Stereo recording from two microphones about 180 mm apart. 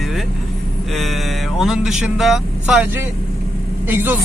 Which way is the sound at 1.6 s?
Centre (ahead or behind).